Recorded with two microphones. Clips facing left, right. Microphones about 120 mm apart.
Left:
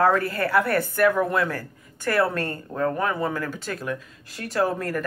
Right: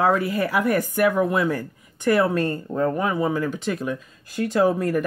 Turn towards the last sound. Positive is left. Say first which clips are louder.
# right 4 dB
turn(degrees=-20)  # may be behind; listen again after turning